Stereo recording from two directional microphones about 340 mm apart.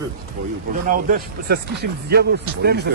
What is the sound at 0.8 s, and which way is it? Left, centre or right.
Speech, right.